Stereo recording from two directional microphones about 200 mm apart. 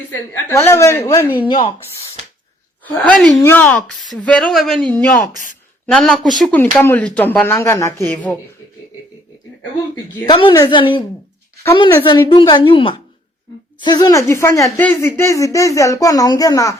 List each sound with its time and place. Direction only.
0.1 s speech: 10° left (ahead or behind)
1.5 s speech: 25° left (ahead or behind)
3.0 s a man's voice: 5° left (ahead or behind)
10.2 s speech: 25° left (ahead or behind)